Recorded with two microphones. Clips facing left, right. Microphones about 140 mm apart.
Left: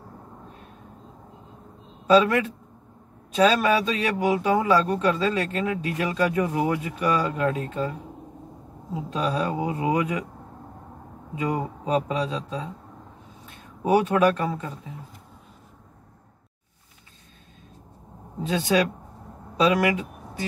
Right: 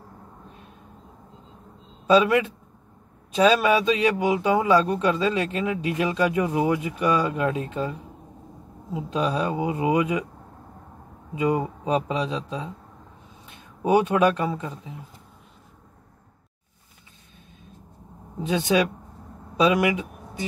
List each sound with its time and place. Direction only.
2.0 s a man's voice: 20° right (ahead or behind)
9.1 s a man's voice: 20° right (ahead or behind)
11.3 s a man's voice: 20° right (ahead or behind)
13.8 s a man's voice: 20° right (ahead or behind)
18.4 s a man's voice: 20° right (ahead or behind)